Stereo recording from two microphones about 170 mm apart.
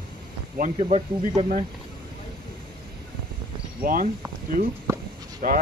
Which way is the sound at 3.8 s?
55° right (ahead or behind).